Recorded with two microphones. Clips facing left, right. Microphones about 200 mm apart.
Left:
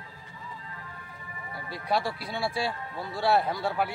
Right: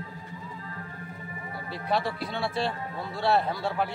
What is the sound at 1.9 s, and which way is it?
A man's voice, 10° left (ahead or behind).